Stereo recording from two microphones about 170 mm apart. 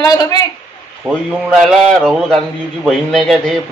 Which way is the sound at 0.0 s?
20° left (ahead or behind).